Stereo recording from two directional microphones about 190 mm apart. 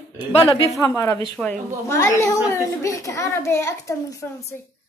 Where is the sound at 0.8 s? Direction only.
15° left (ahead or behind).